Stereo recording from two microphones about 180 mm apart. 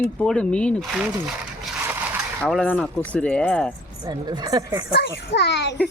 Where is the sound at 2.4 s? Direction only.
5° left (ahead or behind).